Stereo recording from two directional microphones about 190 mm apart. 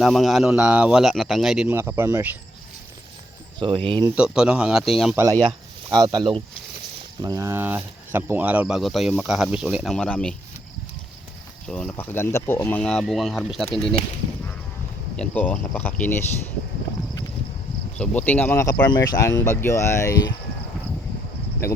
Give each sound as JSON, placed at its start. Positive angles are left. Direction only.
{"t": 0.0, "sound": "speech", "side_deg": 0}
{"t": 1.7, "sound": "speech", "side_deg": -15}
{"t": 3.8, "sound": "speech", "side_deg": -25}
{"t": 4.1, "sound": "speech", "side_deg": -5}
{"t": 5.1, "sound": "speech", "side_deg": -15}
{"t": 11.7, "sound": "speech", "side_deg": 5}
{"t": 15.1, "sound": "speech", "side_deg": 5}
{"t": 17.9, "sound": "speech", "side_deg": 5}